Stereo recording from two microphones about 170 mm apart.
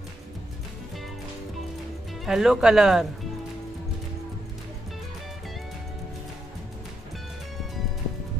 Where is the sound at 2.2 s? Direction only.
Centre (ahead or behind).